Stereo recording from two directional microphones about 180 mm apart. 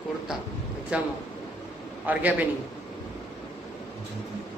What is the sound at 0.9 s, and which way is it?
Speech, 5° right (ahead or behind).